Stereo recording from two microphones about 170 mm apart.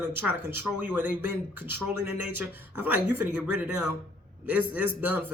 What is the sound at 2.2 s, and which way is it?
Speech, 10° right (ahead or behind).